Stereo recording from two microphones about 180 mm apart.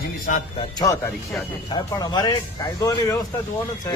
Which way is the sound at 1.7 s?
20° left (ahead or behind).